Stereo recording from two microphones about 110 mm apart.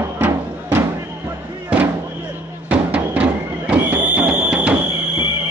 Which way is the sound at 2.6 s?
10° right (ahead or behind).